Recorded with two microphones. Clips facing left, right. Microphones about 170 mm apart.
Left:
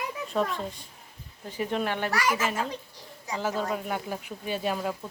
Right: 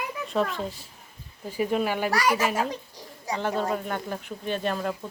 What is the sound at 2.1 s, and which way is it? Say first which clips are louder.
A child's voice: right 3 dB; 35° right (ahead or behind).